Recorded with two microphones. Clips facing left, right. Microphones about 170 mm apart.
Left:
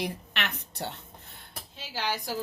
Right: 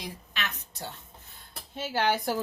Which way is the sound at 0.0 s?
65° left (ahead or behind).